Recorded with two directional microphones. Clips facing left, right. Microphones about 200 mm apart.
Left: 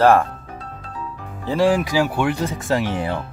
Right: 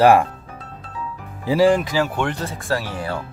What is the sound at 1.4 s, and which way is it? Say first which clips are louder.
Speech: right 2 dB; centre (ahead or behind).